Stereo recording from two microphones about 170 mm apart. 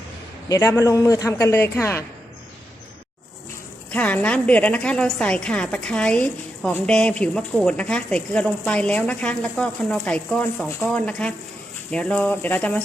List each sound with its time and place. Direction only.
0.4 s a man's voice: 20° left (ahead or behind)
3.9 s a woman's voice: 10° left (ahead or behind)